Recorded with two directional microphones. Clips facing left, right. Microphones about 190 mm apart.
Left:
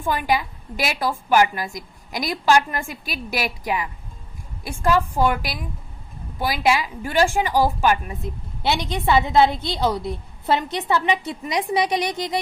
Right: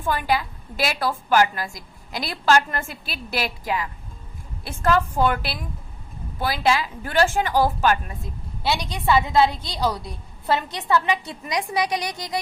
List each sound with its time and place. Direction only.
0.0 s a woman's voice: 15° left (ahead or behind)